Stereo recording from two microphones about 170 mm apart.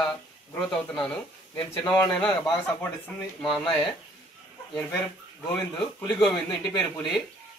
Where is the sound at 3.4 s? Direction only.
5° left (ahead or behind).